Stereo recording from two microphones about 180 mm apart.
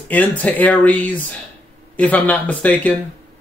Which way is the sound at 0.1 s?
10° left (ahead or behind).